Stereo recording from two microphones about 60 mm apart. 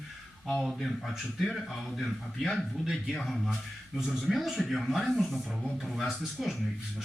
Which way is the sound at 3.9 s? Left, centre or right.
Centre.